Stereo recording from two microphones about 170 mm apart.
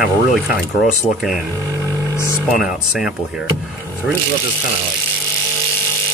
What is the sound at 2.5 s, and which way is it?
Speech, centre (ahead or behind).